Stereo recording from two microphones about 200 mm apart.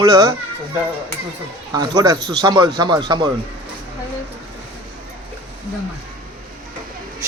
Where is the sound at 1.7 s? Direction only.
20° right (ahead or behind).